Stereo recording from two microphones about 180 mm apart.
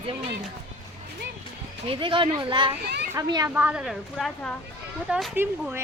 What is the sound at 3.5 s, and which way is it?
Speech, 10° right (ahead or behind).